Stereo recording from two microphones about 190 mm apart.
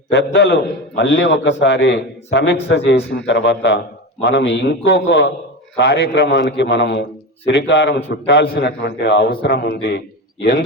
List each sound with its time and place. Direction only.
0.3 s a man's voice: 65° left (ahead or behind)
5.7 s a man's voice: 70° left (ahead or behind)